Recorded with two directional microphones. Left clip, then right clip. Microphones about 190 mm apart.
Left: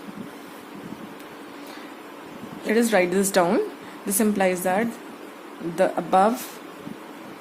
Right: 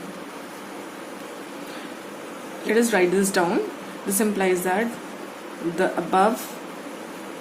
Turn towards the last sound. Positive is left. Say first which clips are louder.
# left 1 dB
turn(degrees=35)  # may be behind; listen again after turning